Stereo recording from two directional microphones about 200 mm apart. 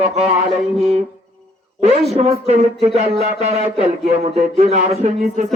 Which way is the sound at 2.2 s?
30° right (ahead or behind).